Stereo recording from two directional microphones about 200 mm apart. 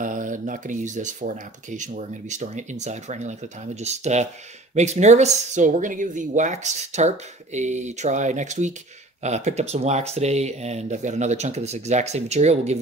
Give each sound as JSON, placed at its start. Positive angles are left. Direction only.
{"t": 0.0, "sound": "speech", "side_deg": -40}